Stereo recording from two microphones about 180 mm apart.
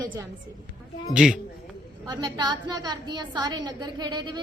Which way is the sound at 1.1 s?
5° right (ahead or behind).